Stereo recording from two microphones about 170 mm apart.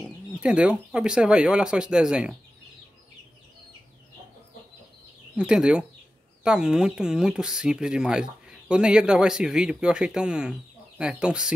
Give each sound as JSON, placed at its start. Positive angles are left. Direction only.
{"t": 0.0, "sound": "speech", "side_deg": -5}
{"t": 5.3, "sound": "speech", "side_deg": -5}